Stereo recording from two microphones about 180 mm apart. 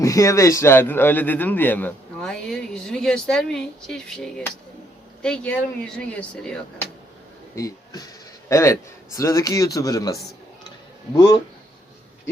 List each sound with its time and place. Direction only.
0.0 s a man's voice: 20° left (ahead or behind)
7.5 s a man's voice: 20° left (ahead or behind)